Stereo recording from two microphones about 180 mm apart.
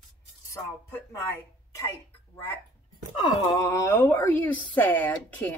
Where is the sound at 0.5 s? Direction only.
15° left (ahead or behind).